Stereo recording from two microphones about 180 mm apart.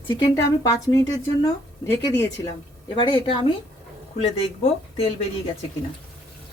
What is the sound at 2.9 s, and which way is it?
Speech, 30° left (ahead or behind).